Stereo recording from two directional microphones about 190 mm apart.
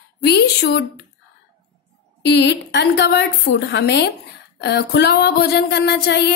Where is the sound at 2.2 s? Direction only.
65° left (ahead or behind).